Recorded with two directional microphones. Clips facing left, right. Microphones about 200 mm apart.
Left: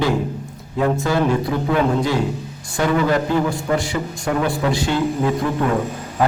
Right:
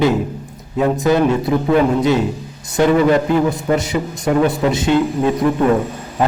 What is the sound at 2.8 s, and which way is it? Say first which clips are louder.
A man's voice: right 5 dB; 20° right (ahead or behind).